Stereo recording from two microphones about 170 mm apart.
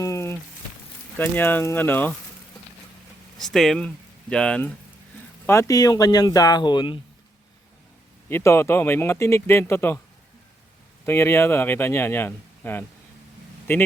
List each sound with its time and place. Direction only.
0.0 s a sound: 15° left (ahead or behind)
1.2 s speech: 10° left (ahead or behind)
3.4 s speech: centre (ahead or behind)
5.5 s speech: 20° left (ahead or behind)
8.3 s speech: 15° left (ahead or behind)
11.0 s speech: 15° left (ahead or behind)